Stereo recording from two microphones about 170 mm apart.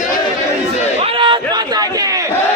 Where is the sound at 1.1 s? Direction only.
30° right (ahead or behind).